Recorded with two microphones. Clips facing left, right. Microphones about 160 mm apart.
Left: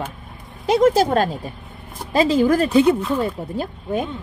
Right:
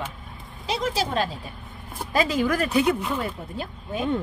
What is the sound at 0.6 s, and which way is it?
Speech, 50° left (ahead or behind).